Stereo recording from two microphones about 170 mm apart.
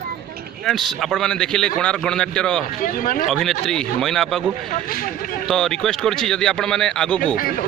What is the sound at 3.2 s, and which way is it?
Speech, centre (ahead or behind).